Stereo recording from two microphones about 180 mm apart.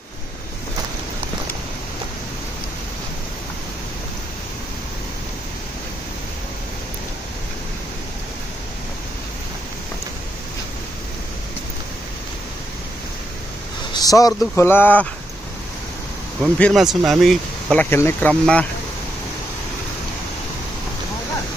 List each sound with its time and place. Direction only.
13.9 s speech: 20° left (ahead or behind)
16.5 s speech: 5° left (ahead or behind)